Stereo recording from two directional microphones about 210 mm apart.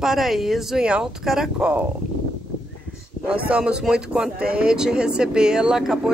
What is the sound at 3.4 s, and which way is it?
Speech, 5° right (ahead or behind).